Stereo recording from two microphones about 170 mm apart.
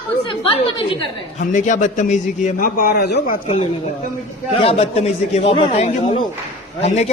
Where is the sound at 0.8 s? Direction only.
30° left (ahead or behind).